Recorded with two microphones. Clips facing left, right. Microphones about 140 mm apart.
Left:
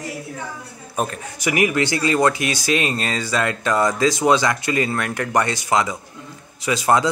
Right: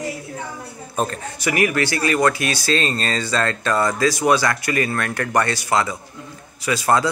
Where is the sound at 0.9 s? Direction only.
10° left (ahead or behind).